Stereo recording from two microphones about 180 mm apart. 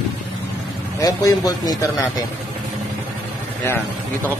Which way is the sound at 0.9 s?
20° left (ahead or behind).